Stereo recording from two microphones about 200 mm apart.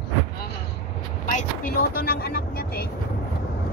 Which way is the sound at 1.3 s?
50° left (ahead or behind).